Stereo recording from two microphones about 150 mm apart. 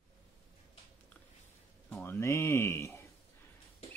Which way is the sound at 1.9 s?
15° left (ahead or behind).